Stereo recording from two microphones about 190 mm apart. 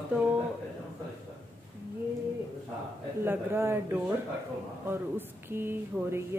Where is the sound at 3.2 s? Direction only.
10° right (ahead or behind).